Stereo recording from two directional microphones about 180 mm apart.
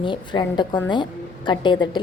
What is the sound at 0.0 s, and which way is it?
A woman's voice, 25° left (ahead or behind).